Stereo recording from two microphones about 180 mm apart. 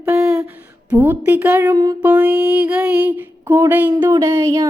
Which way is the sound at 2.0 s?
10° right (ahead or behind).